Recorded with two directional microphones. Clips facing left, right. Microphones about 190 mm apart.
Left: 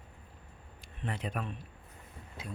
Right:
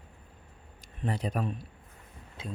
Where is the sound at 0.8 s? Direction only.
40° right (ahead or behind).